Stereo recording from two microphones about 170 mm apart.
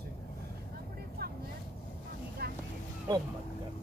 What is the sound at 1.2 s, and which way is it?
Vehicle, 65° right (ahead or behind).